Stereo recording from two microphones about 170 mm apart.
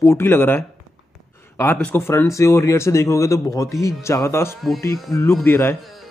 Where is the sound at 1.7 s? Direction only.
10° left (ahead or behind).